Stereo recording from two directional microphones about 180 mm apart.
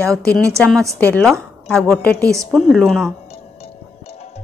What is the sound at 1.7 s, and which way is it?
Speech, 5° left (ahead or behind).